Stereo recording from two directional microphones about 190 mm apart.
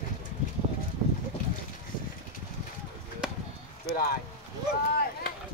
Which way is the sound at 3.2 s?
5° right (ahead or behind).